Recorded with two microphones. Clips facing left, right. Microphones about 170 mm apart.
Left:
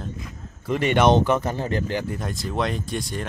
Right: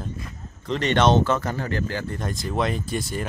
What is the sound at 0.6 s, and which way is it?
Speech, 10° left (ahead or behind).